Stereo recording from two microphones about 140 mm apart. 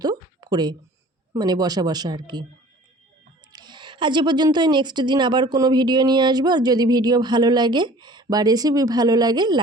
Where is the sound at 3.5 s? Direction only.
30° right (ahead or behind).